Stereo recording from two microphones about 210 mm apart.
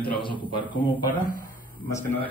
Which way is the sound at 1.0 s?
40° left (ahead or behind).